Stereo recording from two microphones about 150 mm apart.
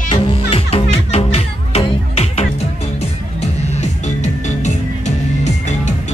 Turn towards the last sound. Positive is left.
turn(degrees=50)  # may be behind; listen again after turning